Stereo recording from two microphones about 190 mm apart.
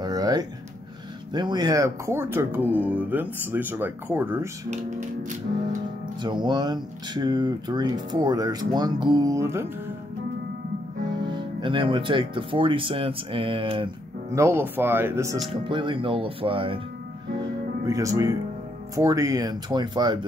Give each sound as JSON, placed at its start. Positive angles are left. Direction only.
{"t": 0.0, "sound": "music", "side_deg": -20}
{"t": 1.3, "sound": "speech", "side_deg": -25}
{"t": 5.2, "sound": "music", "side_deg": -40}
{"t": 6.4, "sound": "speech", "side_deg": -25}
{"t": 11.2, "sound": "speech", "side_deg": -25}
{"t": 14.3, "sound": "speech", "side_deg": -15}
{"t": 15.5, "sound": "speech", "side_deg": -25}
{"t": 17.8, "sound": "speech", "side_deg": -15}